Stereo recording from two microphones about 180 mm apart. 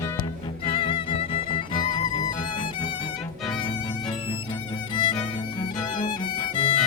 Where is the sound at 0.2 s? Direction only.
30° left (ahead or behind).